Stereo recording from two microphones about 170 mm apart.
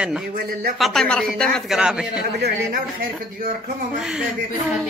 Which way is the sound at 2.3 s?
70° right (ahead or behind).